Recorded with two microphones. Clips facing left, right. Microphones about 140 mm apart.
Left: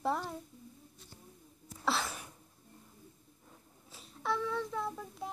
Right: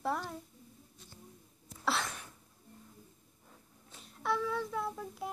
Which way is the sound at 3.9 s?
Centre (ahead or behind).